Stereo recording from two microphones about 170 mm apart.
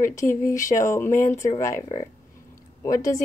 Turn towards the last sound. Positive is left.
turn(degrees=20)  # may be behind; listen again after turning